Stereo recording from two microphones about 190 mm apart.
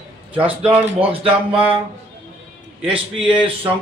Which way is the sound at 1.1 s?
30° right (ahead or behind).